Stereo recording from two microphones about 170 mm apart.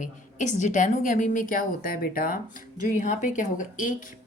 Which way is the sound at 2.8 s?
45° left (ahead or behind).